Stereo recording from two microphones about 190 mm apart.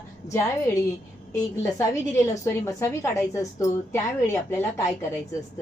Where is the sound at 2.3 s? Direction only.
15° left (ahead or behind).